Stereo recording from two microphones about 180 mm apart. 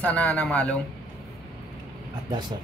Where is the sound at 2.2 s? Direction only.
25° right (ahead or behind).